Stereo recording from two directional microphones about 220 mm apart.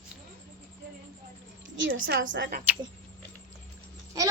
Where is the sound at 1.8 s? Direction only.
60° right (ahead or behind).